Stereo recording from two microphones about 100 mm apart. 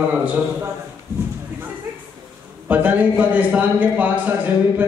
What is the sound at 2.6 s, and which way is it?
A man's voice, 15° right (ahead or behind).